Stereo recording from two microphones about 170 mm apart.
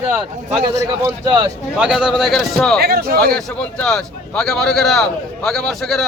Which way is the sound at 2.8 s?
65° right (ahead or behind).